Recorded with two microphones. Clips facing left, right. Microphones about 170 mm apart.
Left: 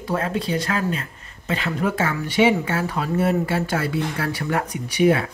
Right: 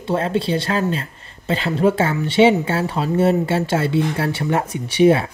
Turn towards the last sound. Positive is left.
turn(degrees=-30)  # may be behind; listen again after turning